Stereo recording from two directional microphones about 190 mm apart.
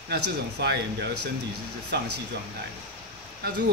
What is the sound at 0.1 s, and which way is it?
Speech, 60° right (ahead or behind).